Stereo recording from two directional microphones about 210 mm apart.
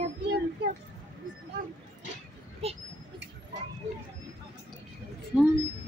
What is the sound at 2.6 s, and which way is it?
Speech, 30° right (ahead or behind).